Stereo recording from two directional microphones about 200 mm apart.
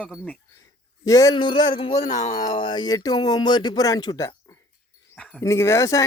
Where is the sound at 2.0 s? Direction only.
35° left (ahead or behind).